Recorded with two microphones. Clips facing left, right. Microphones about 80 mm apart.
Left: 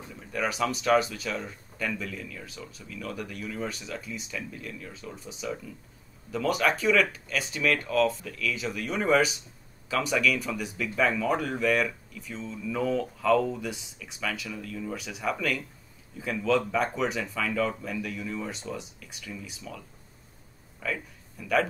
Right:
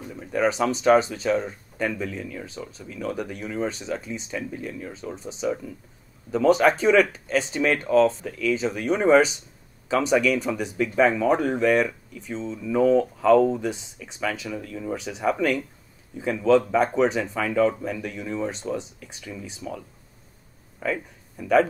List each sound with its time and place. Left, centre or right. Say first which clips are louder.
0.1 s speech: right 8 dB; right
6.3 s speech: right 8 dB; right
18.9 s speech: right 4 dB; right
20.8 s speech: right 6 dB; right